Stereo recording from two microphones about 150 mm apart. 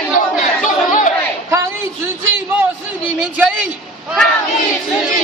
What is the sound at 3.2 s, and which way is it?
Speech, 10° right (ahead or behind).